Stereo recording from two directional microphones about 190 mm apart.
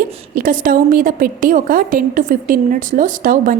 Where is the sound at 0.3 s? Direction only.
45° right (ahead or behind).